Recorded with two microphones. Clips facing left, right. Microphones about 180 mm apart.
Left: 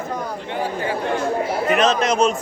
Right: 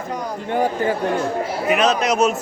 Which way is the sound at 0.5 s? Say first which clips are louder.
Right 5 dB; 45° right (ahead or behind).